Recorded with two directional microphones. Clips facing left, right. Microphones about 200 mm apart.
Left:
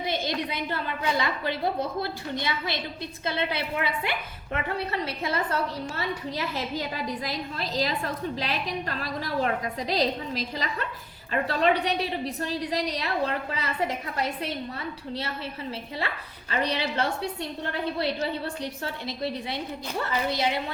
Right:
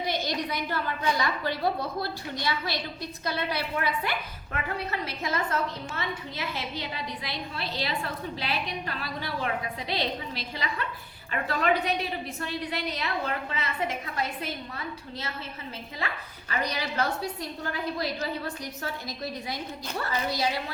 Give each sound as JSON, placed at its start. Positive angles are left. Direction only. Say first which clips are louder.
{"t": 0.5, "sound": "a woman's voice", "louder": "even", "side_deg": 25}
{"t": 16.5, "sound": "a woman's voice", "louder": "left 3 dB", "side_deg": 30}